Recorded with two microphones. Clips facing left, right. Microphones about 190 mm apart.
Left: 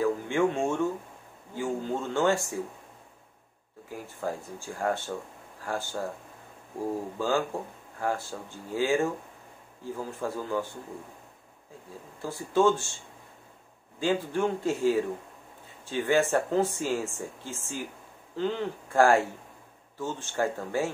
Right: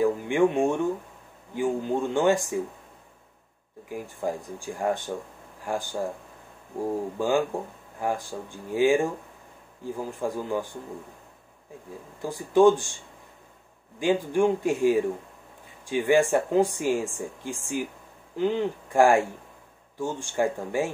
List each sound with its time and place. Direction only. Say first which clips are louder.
0.0 s speech: right 4 dB; 15° right (ahead or behind)
3.9 s speech: right 4 dB; 15° right (ahead or behind)
7.2 s speech: right 4 dB; 15° right (ahead or behind)
12.2 s speech: right 5 dB; 15° right (ahead or behind)
13.9 s speech: right 4 dB; 15° right (ahead or behind)